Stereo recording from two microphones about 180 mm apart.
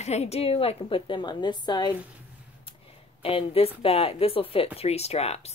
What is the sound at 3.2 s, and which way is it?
Speech, 30° left (ahead or behind).